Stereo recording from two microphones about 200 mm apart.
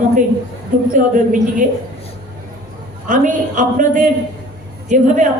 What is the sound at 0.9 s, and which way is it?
Speech, 40° right (ahead or behind).